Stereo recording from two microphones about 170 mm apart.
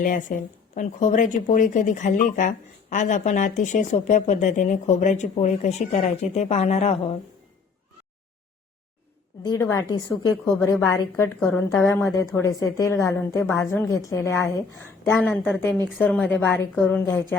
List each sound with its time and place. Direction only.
0.0 s speech: 50° left (ahead or behind)
9.4 s a woman's voice: 20° left (ahead or behind)